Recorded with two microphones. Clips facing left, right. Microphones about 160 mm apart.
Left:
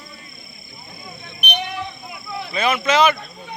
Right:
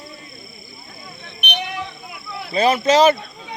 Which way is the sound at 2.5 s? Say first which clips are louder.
Right 4 dB; 35° right (ahead or behind).